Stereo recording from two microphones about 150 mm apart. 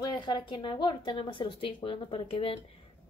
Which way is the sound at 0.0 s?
30° left (ahead or behind).